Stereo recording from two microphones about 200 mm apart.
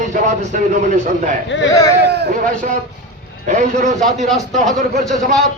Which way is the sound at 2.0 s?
55° right (ahead or behind).